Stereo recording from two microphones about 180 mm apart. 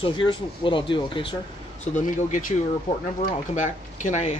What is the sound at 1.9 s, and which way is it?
Speech, 45° left (ahead or behind).